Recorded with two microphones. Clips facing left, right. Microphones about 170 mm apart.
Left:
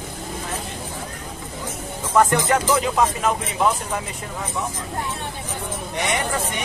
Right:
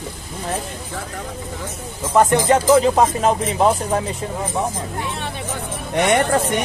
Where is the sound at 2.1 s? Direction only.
25° right (ahead or behind).